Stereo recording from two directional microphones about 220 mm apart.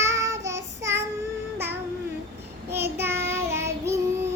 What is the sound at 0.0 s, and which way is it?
Child singing, 15° right (ahead or behind).